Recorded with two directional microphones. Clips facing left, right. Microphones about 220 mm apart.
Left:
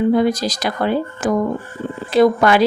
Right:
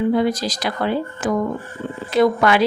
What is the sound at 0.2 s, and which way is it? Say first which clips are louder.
A woman's voice: left 3 dB; 45° left (ahead or behind).